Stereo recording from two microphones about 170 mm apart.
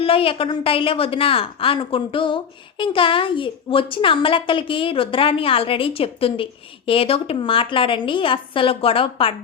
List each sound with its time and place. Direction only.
0.0 s a woman's voice: 35° left (ahead or behind)